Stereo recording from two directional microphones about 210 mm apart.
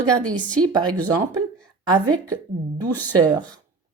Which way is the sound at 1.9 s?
15° right (ahead or behind).